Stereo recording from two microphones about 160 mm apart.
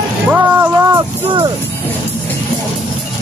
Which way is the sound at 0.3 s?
15° right (ahead or behind).